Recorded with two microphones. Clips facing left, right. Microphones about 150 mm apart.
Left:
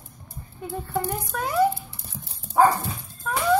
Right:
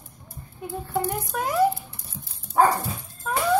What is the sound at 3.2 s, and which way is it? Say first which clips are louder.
Music: right 1 dB; 10° right (ahead or behind).